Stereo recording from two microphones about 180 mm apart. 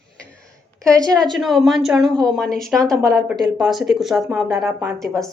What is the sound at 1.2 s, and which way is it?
A woman's voice, centre (ahead or behind).